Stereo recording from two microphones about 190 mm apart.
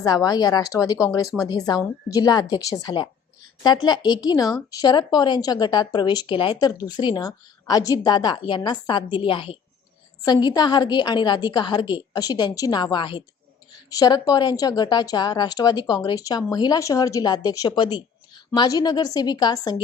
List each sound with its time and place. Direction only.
0.0 s speech: 20° left (ahead or behind)